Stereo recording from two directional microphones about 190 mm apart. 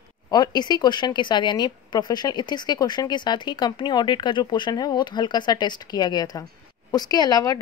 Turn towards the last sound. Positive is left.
turn(degrees=20)  # may be behind; listen again after turning